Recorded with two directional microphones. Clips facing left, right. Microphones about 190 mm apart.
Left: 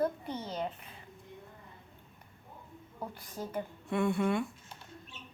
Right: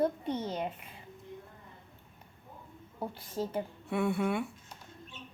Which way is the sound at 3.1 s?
25° right (ahead or behind).